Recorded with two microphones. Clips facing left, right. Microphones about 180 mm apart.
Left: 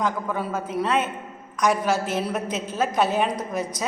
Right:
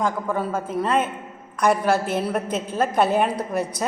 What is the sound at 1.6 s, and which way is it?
A woman's voice, 55° right (ahead or behind).